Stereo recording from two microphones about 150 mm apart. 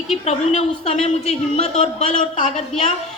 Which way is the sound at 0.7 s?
40° left (ahead or behind).